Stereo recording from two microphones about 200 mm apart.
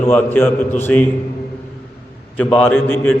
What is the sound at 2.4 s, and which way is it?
Speech, 10° left (ahead or behind).